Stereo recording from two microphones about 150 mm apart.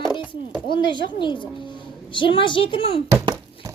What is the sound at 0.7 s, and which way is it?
A child's voice, 30° left (ahead or behind).